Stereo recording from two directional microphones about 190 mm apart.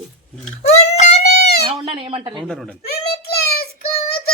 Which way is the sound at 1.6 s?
30° right (ahead or behind).